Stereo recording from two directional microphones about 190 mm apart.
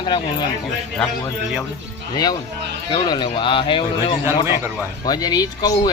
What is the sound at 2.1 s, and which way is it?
Speech, 20° left (ahead or behind).